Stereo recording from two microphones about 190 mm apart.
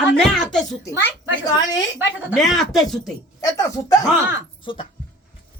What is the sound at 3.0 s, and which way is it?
A woman's voice, 20° left (ahead or behind).